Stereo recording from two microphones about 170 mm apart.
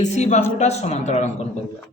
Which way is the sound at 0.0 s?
45° left (ahead or behind).